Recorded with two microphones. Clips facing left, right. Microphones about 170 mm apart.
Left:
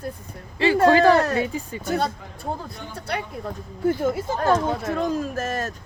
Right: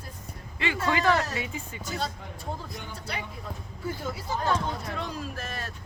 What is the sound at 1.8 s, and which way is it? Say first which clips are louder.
Speech: left 9 dB; 60° left (ahead or behind).